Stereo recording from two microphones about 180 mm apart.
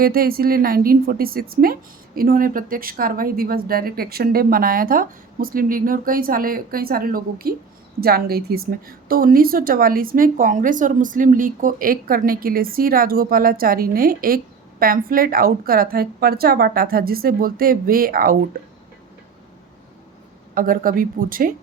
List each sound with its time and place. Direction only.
0.0 s a woman's voice: 55° right (ahead or behind)
20.6 s a woman's voice: 50° right (ahead or behind)